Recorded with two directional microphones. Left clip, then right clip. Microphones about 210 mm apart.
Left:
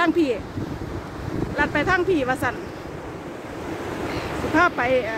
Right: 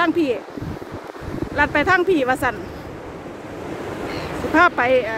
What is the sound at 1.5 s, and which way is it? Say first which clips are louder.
Speech: right 4 dB; 25° right (ahead or behind).